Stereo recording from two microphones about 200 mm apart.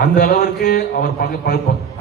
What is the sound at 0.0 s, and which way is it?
A man's voice, 45° left (ahead or behind).